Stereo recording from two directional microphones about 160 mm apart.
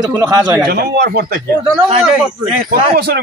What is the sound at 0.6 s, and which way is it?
Speech, 90° right.